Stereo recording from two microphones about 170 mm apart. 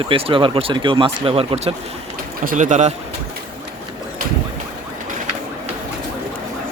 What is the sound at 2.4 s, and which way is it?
Speech, 50° right (ahead or behind).